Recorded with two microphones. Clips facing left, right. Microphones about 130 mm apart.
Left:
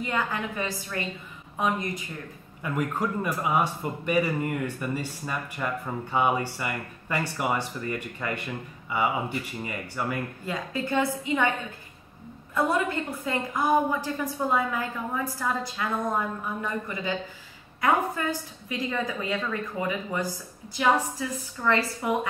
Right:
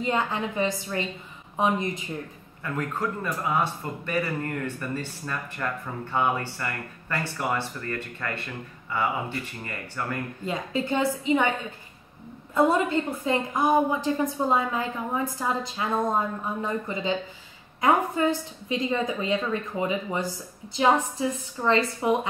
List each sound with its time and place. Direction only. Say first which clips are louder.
0.0 s a woman's voice: right 3 dB; 25° right (ahead or behind)
2.6 s speech: left 1 dB; 15° left (ahead or behind)
10.4 s a woman's voice: right 3 dB; 20° right (ahead or behind)
12.5 s a woman's voice: right 4 dB; 25° right (ahead or behind)